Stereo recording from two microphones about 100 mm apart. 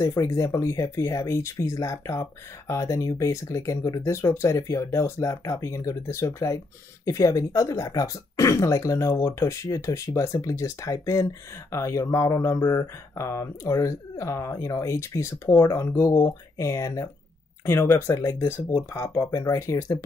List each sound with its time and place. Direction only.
0.0 s speech: 35° left (ahead or behind)